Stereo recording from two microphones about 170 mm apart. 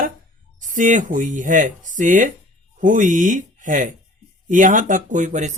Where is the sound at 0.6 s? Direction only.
50° right (ahead or behind).